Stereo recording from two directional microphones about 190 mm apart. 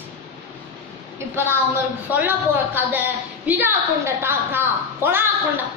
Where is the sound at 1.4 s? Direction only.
10° right (ahead or behind).